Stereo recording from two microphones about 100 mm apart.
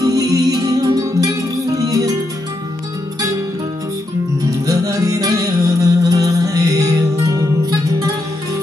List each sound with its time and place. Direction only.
0.0 s music: 35° right (ahead or behind)
4.5 s music: 35° right (ahead or behind)